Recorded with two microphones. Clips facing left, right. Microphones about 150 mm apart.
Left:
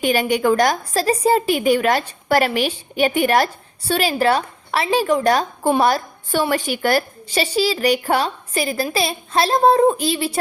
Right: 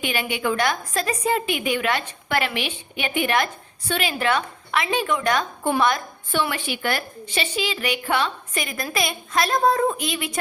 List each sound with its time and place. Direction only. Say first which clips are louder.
0.0 s a woman's voice: left 8 dB; 40° left (ahead or behind)